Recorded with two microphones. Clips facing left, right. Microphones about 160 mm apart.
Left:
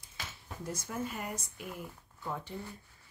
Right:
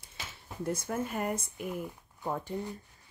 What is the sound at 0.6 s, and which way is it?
Speech, 55° right (ahead or behind).